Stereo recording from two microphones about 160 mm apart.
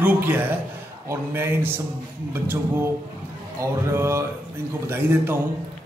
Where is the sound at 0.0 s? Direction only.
10° right (ahead or behind).